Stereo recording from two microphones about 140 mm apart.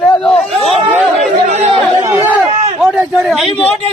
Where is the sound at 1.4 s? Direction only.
50° right (ahead or behind).